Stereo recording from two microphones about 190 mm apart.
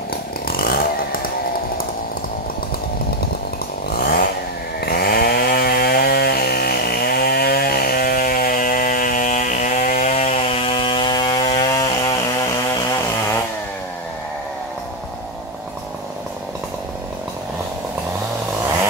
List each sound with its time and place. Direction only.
0.5 s chainsaw: 50° left (ahead or behind)
3.9 s chainsaw: 50° left (ahead or behind); by 11.8 s 20° left (ahead or behind)